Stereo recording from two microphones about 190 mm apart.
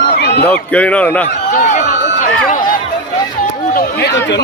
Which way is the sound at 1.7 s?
40° left (ahead or behind).